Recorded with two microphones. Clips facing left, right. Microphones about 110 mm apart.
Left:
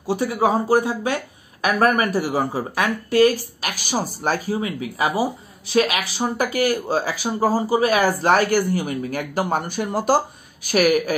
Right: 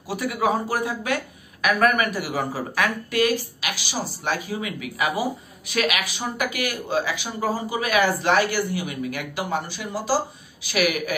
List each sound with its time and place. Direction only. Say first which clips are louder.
0.0 s speech: left 4 dB; 30° left (ahead or behind)